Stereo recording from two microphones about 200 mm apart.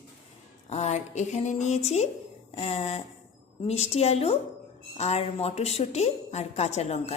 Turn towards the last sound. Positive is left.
turn(degrees=30)  # may be behind; listen again after turning